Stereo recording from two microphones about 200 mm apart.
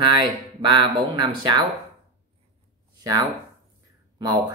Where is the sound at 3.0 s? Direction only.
20° right (ahead or behind).